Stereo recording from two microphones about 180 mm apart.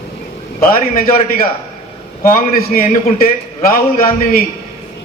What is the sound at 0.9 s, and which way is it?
Speech, 50° left (ahead or behind).